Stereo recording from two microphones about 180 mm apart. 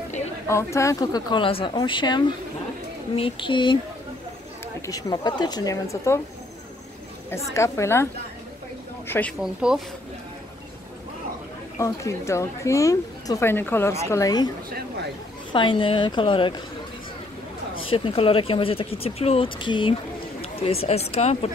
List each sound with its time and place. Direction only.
0.5 s speech: 15° left (ahead or behind)
4.8 s speech: 20° left (ahead or behind)
7.5 s a woman's voice: 15° left (ahead or behind)
9.4 s speech: 5° right (ahead or behind)
11.8 s a woman's voice: 15° left (ahead or behind)
15.5 s speech: 30° left (ahead or behind)
17.7 s speech: 30° left (ahead or behind)